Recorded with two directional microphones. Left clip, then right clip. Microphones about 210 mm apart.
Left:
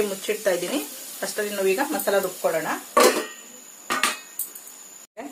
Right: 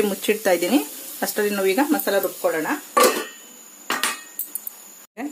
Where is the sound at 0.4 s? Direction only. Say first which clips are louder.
Right 4 dB; 50° right (ahead or behind).